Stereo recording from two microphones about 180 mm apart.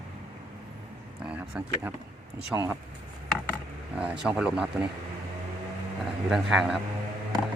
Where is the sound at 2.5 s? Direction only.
15° right (ahead or behind).